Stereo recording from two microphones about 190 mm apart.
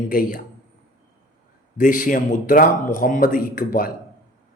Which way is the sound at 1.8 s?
45° left (ahead or behind).